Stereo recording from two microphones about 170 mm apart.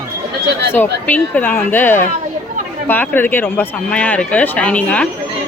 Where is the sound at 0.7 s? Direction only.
10° left (ahead or behind).